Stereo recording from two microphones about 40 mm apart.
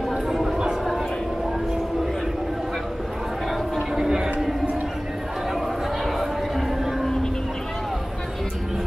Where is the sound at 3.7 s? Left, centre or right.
Centre.